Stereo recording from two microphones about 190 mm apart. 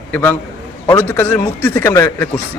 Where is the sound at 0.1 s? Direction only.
10° left (ahead or behind).